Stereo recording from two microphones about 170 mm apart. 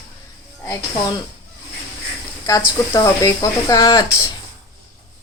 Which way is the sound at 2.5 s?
20° left (ahead or behind).